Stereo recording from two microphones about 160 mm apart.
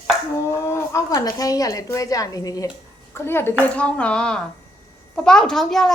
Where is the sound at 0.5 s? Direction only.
15° left (ahead or behind).